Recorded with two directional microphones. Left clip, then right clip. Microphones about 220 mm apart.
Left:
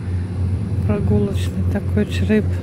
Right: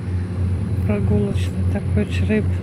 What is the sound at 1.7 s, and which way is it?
Speech, 25° left (ahead or behind).